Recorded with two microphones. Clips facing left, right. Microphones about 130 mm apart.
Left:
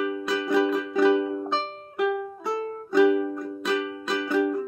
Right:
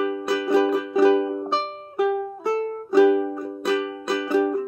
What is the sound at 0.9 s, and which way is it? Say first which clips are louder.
Music: right 3 dB; 30° right (ahead or behind).